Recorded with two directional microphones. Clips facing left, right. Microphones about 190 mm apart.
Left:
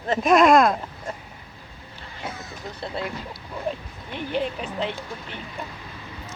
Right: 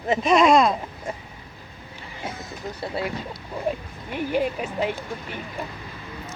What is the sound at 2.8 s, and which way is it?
Speech, 5° right (ahead or behind).